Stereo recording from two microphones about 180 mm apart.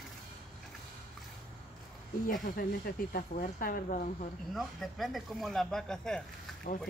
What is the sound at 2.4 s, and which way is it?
Speech, 55° left (ahead or behind).